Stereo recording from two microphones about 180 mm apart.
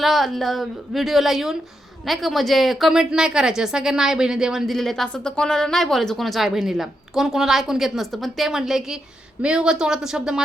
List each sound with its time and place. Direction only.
0.0 s speech: centre (ahead or behind)